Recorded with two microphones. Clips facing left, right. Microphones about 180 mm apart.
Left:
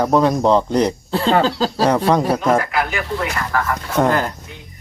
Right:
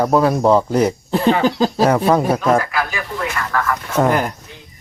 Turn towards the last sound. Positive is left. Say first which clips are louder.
# right 1 dB
turn(degrees=-15)  # may be behind; listen again after turning